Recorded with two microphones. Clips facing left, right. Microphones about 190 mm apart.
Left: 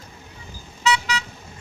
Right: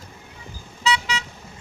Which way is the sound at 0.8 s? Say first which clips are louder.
Left 1 dB; 25° right (ahead or behind).